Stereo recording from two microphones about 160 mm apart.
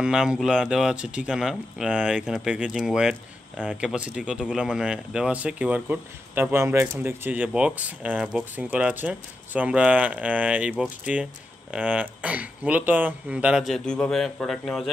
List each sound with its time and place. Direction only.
0.0 s speech: 5° right (ahead or behind)